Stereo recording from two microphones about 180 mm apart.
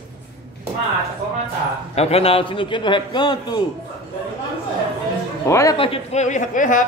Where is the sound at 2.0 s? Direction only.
35° left (ahead or behind).